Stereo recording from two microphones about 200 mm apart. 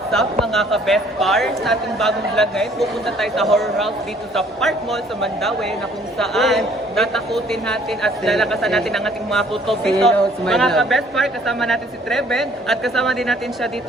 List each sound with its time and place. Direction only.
0.1 s speech: centre (ahead or behind)